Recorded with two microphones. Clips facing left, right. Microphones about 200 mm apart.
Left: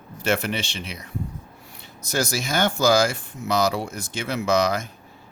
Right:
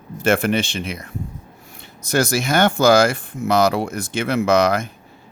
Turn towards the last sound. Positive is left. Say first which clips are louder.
# right 5 dB
turn(degrees=-60)  # may be behind; listen again after turning